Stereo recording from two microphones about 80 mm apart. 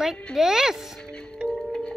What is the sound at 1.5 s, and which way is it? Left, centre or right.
Music, centre.